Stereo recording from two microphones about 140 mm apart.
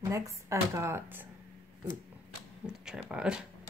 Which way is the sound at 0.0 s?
20° right (ahead or behind).